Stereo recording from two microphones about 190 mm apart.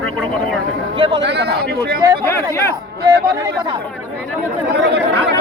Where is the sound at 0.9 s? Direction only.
25° right (ahead or behind).